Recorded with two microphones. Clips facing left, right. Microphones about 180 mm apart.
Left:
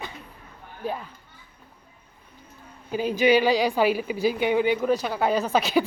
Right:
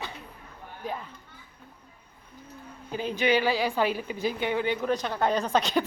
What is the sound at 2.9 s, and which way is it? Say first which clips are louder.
A woman's voice: left 5 dB; 10° left (ahead or behind).